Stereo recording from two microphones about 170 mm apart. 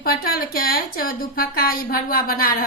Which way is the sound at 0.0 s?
60° left (ahead or behind).